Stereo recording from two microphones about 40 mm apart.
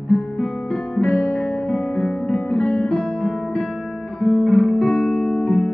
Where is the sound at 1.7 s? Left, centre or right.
Left.